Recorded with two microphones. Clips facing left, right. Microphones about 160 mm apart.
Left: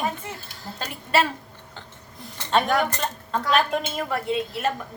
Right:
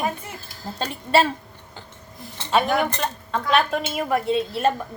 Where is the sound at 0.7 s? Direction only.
30° right (ahead or behind).